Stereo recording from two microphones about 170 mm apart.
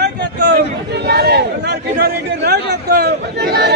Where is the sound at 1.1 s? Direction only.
70° right (ahead or behind).